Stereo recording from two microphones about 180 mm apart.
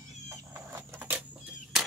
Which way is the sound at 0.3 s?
15° right (ahead or behind).